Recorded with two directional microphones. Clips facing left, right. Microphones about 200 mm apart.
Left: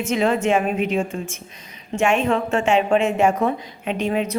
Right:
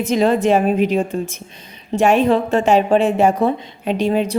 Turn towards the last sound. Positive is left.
turn(degrees=-35)  # may be behind; listen again after turning